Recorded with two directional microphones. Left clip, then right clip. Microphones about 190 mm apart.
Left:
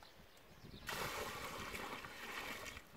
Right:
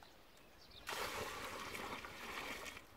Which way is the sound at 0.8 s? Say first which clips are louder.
Even; centre (ahead or behind).